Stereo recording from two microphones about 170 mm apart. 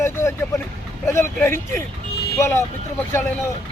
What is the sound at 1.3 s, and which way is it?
Speech, 15° left (ahead or behind).